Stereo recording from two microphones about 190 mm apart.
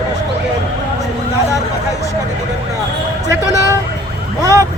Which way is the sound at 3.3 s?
15° right (ahead or behind).